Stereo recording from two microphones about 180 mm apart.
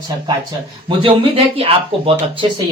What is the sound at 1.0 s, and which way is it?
Speech, 30° right (ahead or behind).